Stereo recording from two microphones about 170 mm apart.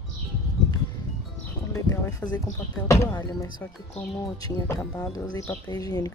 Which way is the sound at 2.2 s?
10° left (ahead or behind).